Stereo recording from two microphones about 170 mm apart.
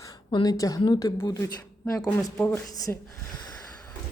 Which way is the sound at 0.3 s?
25° left (ahead or behind).